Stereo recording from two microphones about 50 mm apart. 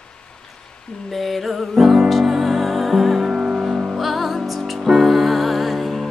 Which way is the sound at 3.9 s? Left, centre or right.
Centre.